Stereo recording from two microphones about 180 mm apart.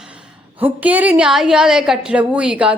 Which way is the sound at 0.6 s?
10° right (ahead or behind).